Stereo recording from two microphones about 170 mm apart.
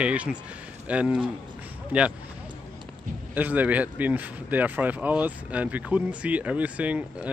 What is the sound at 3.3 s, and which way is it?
Speech, 10° right (ahead or behind).